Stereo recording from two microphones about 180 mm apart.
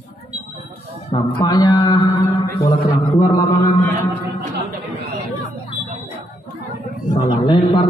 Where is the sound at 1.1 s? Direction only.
25° left (ahead or behind).